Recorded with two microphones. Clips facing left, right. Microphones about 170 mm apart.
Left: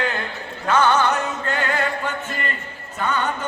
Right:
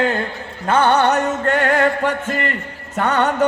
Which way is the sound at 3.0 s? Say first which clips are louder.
Right 6 dB; 70° right (ahead or behind).